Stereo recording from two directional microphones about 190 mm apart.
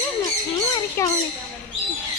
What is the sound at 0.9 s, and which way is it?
Speech, 15° left (ahead or behind).